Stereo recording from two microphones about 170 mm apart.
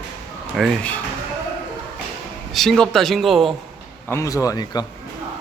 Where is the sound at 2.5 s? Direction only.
Centre (ahead or behind).